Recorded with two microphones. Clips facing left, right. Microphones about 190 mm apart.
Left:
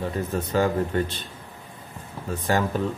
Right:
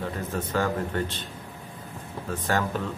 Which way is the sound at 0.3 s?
10° left (ahead or behind).